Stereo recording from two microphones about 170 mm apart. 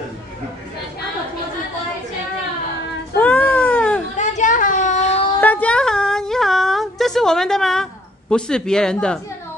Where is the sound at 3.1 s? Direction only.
10° left (ahead or behind).